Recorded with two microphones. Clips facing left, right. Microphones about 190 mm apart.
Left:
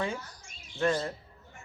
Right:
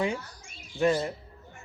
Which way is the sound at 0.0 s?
15° right (ahead or behind).